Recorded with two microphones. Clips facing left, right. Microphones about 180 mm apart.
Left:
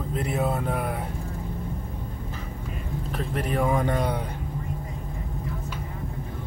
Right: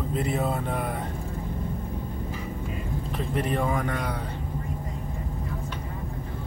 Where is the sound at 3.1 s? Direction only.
Centre (ahead or behind).